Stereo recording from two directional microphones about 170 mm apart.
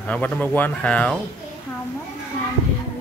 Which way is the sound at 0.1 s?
10° left (ahead or behind).